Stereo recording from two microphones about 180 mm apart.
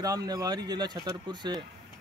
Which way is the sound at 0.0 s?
20° right (ahead or behind).